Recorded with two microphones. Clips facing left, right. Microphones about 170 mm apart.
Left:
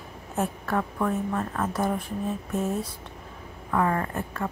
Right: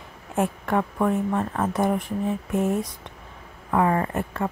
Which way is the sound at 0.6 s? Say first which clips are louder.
Right 3 dB; 20° right (ahead or behind).